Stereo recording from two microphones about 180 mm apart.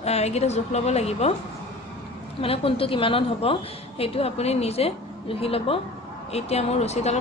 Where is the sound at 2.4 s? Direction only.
30° left (ahead or behind).